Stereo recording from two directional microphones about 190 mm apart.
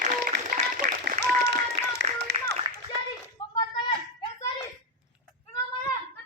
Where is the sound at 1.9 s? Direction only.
65° right (ahead or behind).